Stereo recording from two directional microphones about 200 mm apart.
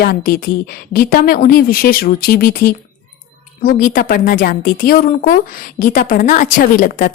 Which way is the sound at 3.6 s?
45° left (ahead or behind).